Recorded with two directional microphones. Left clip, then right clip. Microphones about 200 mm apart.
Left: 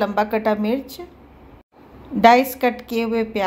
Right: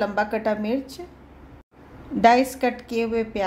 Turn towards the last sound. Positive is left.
turn(degrees=10)  # may be behind; listen again after turning